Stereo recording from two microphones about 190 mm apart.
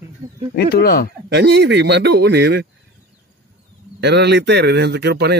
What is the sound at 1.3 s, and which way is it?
Speech, 60° right (ahead or behind).